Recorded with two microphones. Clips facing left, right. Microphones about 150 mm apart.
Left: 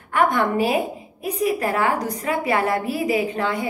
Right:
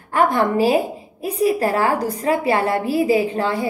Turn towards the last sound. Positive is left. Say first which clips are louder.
# right 3 dB
turn(degrees=-30)  # may be behind; listen again after turning